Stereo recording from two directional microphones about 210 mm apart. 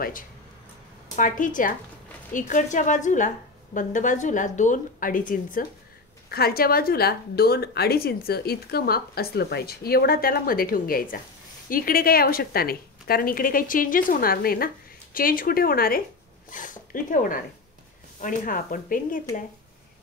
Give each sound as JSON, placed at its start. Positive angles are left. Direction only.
{"t": 1.1, "sound": "a woman's voice", "side_deg": 40}